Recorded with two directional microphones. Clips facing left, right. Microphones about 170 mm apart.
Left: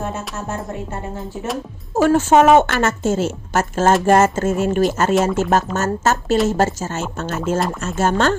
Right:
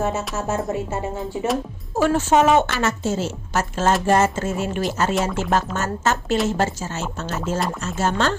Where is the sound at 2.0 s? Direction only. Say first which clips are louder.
Left 4 dB; 45° left (ahead or behind).